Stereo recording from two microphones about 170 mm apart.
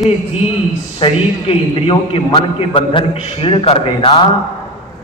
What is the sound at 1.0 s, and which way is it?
A man's voice, 35° left (ahead or behind).